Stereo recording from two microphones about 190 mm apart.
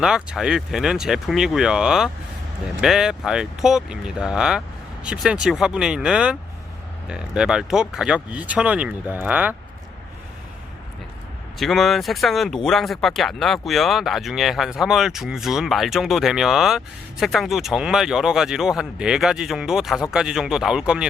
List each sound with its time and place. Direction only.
0.0 s speech: centre (ahead or behind)
11.6 s speech: centre (ahead or behind)